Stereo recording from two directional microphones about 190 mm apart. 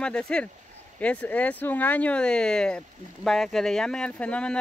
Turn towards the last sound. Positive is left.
turn(degrees=5)  # may be behind; listen again after turning